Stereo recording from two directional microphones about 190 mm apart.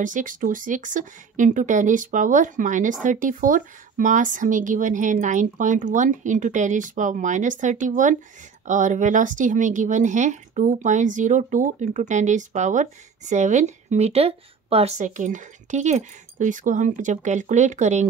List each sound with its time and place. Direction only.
0.0 s speech: 45° right (ahead or behind)